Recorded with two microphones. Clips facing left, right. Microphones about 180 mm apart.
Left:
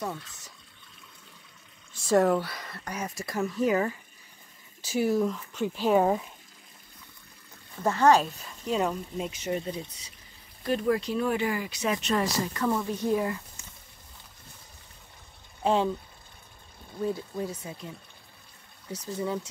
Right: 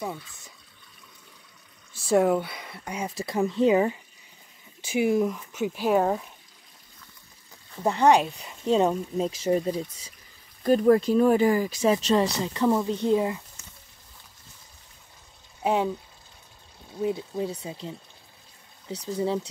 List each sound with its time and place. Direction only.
0.0 s speech: 10° right (ahead or behind)
2.0 s speech: 10° right (ahead or behind)
3.3 s speech: 25° right (ahead or behind); by 6.0 s 5° right (ahead or behind)
7.8 s speech: 15° right (ahead or behind)
8.6 s speech: 30° right (ahead or behind)
15.6 s speech: 10° right (ahead or behind)
17.0 s speech: 20° right (ahead or behind)